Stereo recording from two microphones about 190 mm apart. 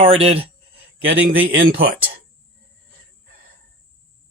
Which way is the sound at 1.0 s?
90° right.